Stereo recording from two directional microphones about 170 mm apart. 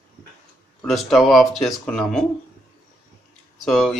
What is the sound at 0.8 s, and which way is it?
Speech, centre (ahead or behind).